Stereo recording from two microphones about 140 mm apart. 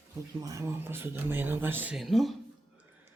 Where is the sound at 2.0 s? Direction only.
Centre (ahead or behind).